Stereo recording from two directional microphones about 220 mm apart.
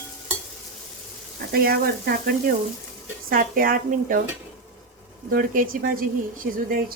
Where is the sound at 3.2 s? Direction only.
40° right (ahead or behind).